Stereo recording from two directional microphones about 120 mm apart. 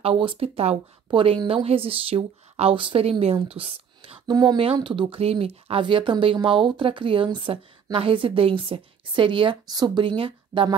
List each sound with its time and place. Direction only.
0.0 s speech: 50° right (ahead or behind)
3.4 s a sound: 50° right (ahead or behind)
4.3 s speech: 35° right (ahead or behind)